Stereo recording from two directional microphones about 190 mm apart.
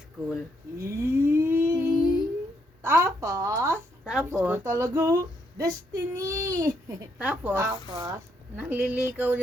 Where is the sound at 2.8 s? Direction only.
15° right (ahead or behind).